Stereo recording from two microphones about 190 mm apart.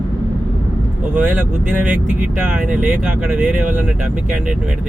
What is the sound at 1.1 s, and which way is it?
Speech, 10° right (ahead or behind).